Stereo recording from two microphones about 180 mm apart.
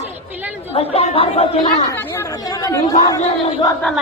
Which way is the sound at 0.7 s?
35° left (ahead or behind).